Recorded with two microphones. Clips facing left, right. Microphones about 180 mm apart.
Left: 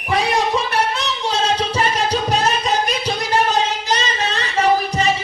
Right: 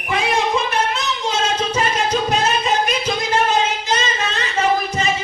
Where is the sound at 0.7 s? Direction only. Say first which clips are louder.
Left 1 dB; 35° left (ahead or behind).